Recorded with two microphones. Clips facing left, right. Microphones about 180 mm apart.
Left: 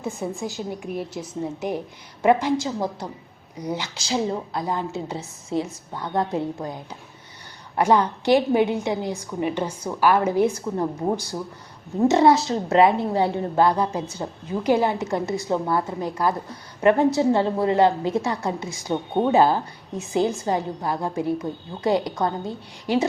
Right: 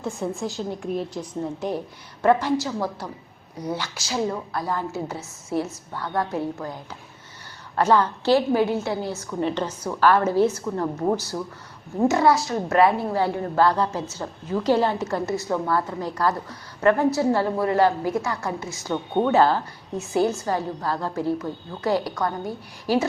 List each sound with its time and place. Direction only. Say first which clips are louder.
0.1 s a woman's voice: right 2 dB; centre (ahead or behind)
2.2 s a woman's voice: left 1 dB; 15° left (ahead or behind)
12.0 s a woman's voice: left 3 dB; 20° left (ahead or behind)